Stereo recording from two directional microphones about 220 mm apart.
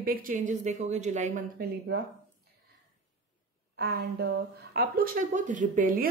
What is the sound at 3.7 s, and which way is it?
A woman's voice, 45° right (ahead or behind).